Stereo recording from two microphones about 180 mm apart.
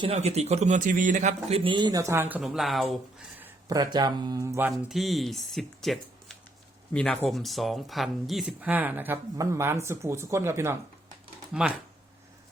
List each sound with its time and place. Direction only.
0.0 s a man's voice: 35° right (ahead or behind); by 2.4 s 10° right (ahead or behind)
2.4 s speech: centre (ahead or behind)
3.4 s speech: 20° right (ahead or behind)
4.9 s speech: centre (ahead or behind)